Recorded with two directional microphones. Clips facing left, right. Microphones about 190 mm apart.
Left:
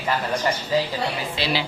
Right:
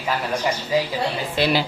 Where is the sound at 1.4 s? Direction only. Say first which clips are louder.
Right 8 dB; 50° right (ahead or behind).